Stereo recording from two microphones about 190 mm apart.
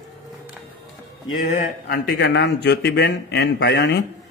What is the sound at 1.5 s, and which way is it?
Speech, 45° left (ahead or behind).